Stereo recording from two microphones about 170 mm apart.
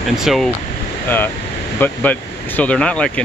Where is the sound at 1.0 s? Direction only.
10° left (ahead or behind).